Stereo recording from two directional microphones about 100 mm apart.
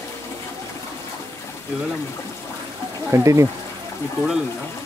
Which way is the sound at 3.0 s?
30° right (ahead or behind).